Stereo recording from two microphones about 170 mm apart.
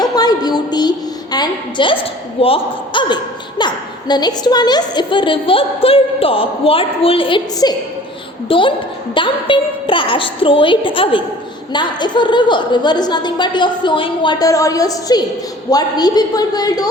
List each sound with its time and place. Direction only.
0.0 s a woman's voice: 25° left (ahead or behind)